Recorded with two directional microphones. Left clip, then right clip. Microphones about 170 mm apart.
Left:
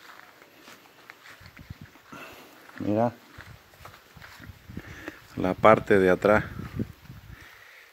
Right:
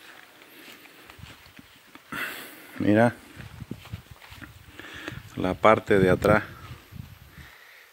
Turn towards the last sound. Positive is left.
turn(degrees=5)  # may be behind; listen again after turning